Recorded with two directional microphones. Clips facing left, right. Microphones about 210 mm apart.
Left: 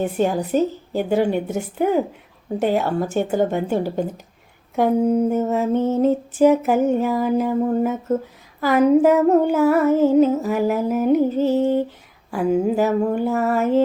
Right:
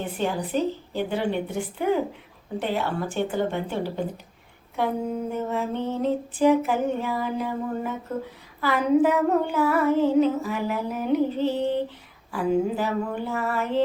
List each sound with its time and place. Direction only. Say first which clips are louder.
0.0 s mantra: left 7 dB; 45° left (ahead or behind)